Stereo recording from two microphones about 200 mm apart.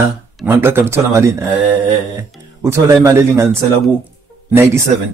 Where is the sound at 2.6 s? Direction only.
15° right (ahead or behind).